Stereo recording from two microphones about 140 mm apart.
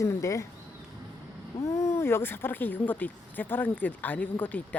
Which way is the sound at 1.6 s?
20° left (ahead or behind).